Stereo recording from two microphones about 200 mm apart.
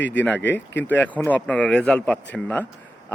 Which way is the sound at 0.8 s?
10° left (ahead or behind).